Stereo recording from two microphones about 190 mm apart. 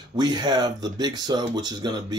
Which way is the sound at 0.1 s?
20° right (ahead or behind).